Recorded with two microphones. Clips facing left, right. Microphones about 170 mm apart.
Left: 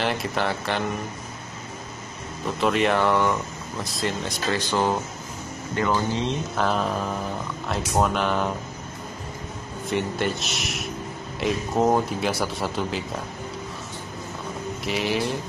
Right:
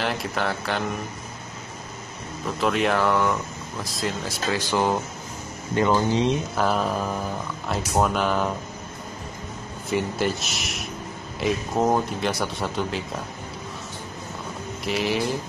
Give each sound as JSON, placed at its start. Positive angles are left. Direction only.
{"t": 0.0, "sound": "speech", "side_deg": 0}
{"t": 2.6, "sound": "speech", "side_deg": 0}
{"t": 4.6, "sound": "speech", "side_deg": -15}
{"t": 6.5, "sound": "speech", "side_deg": -5}
{"t": 9.8, "sound": "speech", "side_deg": 0}
{"t": 14.9, "sound": "speech", "side_deg": 0}